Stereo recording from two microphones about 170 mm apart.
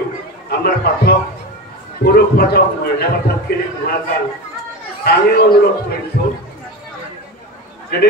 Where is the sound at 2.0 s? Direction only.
65° left (ahead or behind).